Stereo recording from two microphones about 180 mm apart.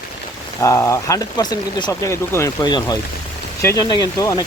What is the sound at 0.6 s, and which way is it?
Speech, 15° left (ahead or behind).